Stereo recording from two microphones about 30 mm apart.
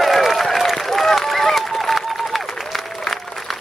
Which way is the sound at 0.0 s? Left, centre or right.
Centre.